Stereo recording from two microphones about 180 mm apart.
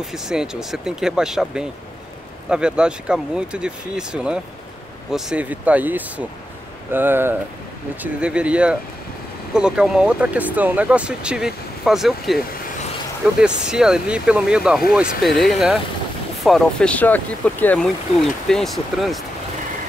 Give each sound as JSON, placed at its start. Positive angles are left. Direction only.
{"t": 0.0, "sound": "speech", "side_deg": -5}
{"t": 13.4, "sound": "speech", "side_deg": -5}